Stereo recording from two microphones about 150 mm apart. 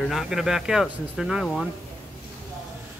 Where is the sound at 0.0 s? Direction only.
Centre (ahead or behind).